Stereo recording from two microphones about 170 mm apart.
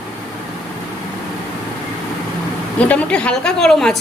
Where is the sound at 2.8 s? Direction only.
10° left (ahead or behind).